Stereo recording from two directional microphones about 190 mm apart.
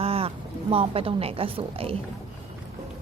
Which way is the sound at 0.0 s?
30° right (ahead or behind).